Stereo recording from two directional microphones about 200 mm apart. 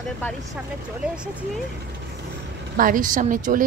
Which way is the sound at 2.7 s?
40° right (ahead or behind).